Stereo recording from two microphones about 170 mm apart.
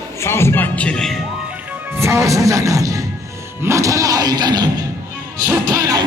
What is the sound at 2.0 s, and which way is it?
Speech, 15° right (ahead or behind).